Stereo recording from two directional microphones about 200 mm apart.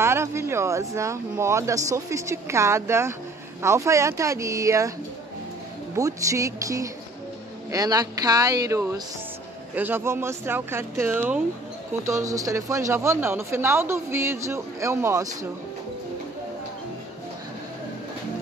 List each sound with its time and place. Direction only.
0.0 s speech: 15° right (ahead or behind)
5.9 s speech: 15° right (ahead or behind)